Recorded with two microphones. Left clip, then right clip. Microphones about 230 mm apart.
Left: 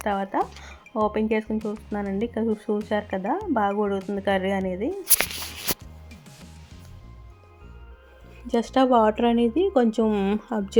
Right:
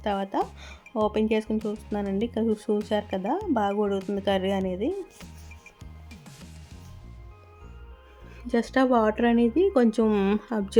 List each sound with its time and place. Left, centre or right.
0.0 s speech: centre
6.1 s music: centre
8.4 s speech: centre